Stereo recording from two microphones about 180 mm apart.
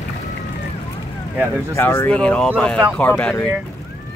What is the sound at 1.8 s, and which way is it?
Speech, 10° left (ahead or behind).